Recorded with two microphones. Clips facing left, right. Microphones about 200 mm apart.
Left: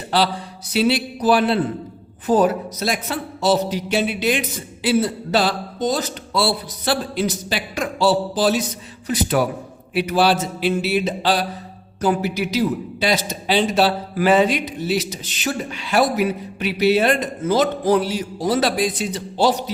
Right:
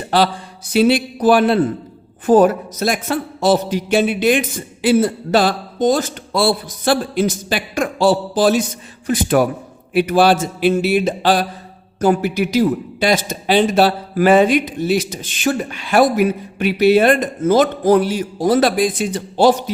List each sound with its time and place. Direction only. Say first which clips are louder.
0.7 s a man's voice: right 5 dB; 50° right (ahead or behind)